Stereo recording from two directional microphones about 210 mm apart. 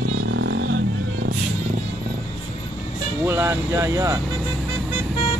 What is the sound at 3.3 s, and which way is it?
Speech, 10° right (ahead or behind).